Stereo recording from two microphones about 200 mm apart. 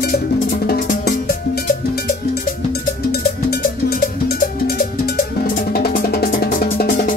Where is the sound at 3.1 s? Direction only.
50° left (ahead or behind).